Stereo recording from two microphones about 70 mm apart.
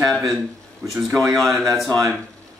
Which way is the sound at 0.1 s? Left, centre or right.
Centre.